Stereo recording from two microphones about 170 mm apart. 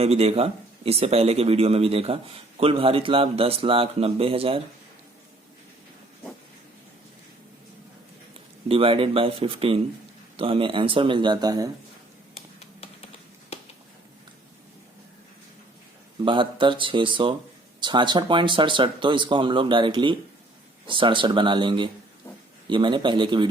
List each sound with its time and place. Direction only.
0.0 s speech: 35° right (ahead or behind)
8.6 s speech: 30° right (ahead or behind)
12.5 s computer keyboard: 35° left (ahead or behind)
16.2 s speech: 30° right (ahead or behind)